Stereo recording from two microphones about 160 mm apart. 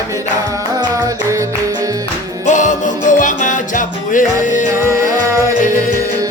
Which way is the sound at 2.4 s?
50° left (ahead or behind).